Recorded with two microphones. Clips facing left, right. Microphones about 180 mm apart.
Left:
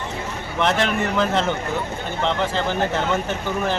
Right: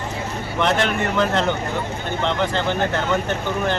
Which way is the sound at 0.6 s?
Centre (ahead or behind).